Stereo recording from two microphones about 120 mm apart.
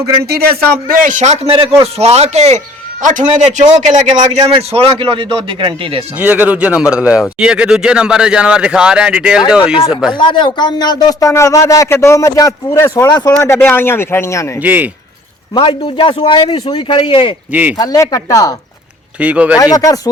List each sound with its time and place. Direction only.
1.0 s speech: 80° right
1.5 s a man's voice: 50° right (ahead or behind); by 2.6 s 70° right (ahead or behind)
3.0 s a man's voice: 90° right; by 4.5 s 70° right (ahead or behind)
4.5 s speech: 50° right (ahead or behind)
6.1 s a man's voice: 15° right (ahead or behind)
10.2 s speech: 40° left (ahead or behind)
13.4 s speech: 20° left (ahead or behind)
14.6 s a man's voice: 15° right (ahead or behind)
15.5 s a man's voice: 45° left (ahead or behind)
17.5 s a man's voice: 15° right (ahead or behind)
17.7 s speech: 30° left (ahead or behind)
19.2 s a man's voice: 10° right (ahead or behind)
19.5 s speech: 30° left (ahead or behind)